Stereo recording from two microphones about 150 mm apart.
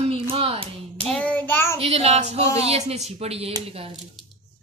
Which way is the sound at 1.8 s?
45° right (ahead or behind).